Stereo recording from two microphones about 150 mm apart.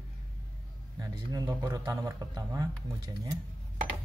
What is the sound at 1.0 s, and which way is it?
A man's voice, 20° right (ahead or behind).